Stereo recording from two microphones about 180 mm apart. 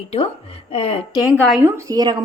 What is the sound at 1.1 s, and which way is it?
Speech, 20° left (ahead or behind).